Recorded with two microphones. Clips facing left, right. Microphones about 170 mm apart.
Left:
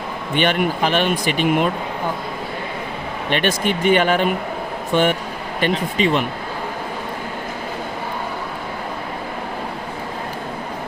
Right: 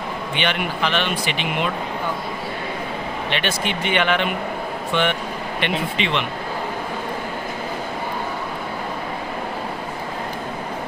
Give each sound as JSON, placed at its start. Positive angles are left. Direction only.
{"t": 0.3, "sound": "speech", "side_deg": 45}
{"t": 3.2, "sound": "speech", "side_deg": 45}